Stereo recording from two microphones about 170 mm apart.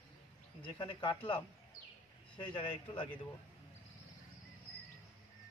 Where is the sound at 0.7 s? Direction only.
25° left (ahead or behind).